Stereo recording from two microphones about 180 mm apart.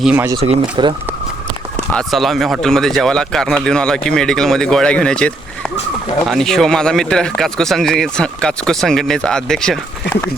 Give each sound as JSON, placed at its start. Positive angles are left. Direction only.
{"t": 0.0, "sound": "speech", "side_deg": -5}
{"t": 0.4, "sound": "speech", "side_deg": -30}
{"t": 1.9, "sound": "speech", "side_deg": 5}